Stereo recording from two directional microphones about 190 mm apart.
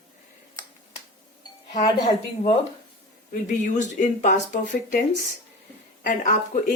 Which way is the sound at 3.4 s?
40° left (ahead or behind).